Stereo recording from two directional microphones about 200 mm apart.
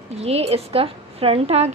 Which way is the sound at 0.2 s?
30° right (ahead or behind).